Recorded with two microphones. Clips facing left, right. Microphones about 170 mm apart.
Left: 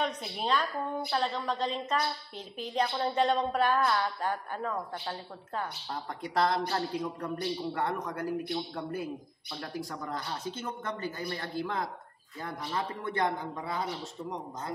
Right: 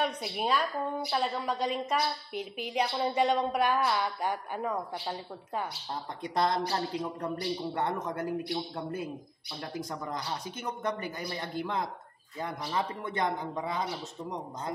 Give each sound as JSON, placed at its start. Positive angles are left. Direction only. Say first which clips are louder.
{"t": 0.4, "sound": "a woman's voice", "louder": "right 1 dB", "side_deg": -10}